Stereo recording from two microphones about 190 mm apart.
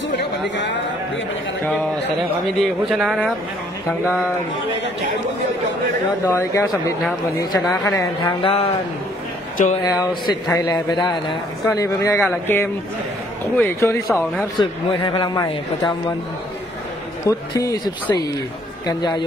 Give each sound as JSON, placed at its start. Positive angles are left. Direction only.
{"t": 2.6, "sound": "speech", "side_deg": 0}
{"t": 6.2, "sound": "speech", "side_deg": 15}
{"t": 9.8, "sound": "speech", "side_deg": 20}
{"t": 14.6, "sound": "speech", "side_deg": 25}
{"t": 17.3, "sound": "speech", "side_deg": 15}